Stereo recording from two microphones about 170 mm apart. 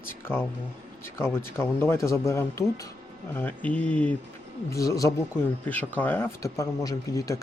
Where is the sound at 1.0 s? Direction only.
15° left (ahead or behind).